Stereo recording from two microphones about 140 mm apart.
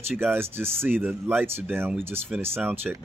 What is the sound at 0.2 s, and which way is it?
Speech, 15° right (ahead or behind).